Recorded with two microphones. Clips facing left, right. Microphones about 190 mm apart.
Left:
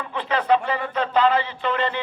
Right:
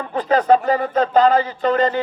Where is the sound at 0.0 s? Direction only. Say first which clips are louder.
Right 7 dB; 40° right (ahead or behind).